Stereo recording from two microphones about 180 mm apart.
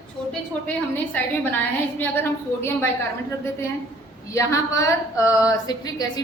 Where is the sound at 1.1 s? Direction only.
10° left (ahead or behind).